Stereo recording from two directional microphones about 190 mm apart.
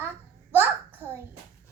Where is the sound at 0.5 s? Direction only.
10° right (ahead or behind).